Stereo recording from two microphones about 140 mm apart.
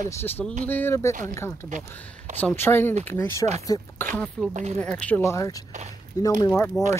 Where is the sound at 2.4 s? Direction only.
15° left (ahead or behind).